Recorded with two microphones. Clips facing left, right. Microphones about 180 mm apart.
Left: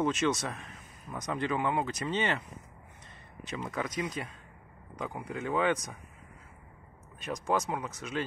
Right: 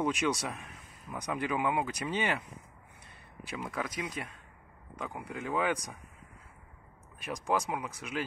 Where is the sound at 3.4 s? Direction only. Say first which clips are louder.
Left 2 dB; 5° right (ahead or behind).